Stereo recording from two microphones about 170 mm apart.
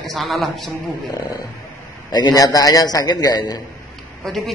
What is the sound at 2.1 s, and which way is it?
A man's voice, 25° left (ahead or behind).